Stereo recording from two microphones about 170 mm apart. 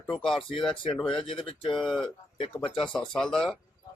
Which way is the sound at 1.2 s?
30° left (ahead or behind).